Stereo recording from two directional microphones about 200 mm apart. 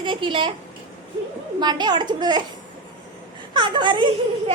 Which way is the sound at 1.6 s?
20° right (ahead or behind).